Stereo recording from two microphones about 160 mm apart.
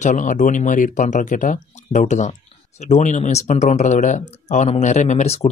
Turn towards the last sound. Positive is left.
turn(degrees=40)  # may be behind; listen again after turning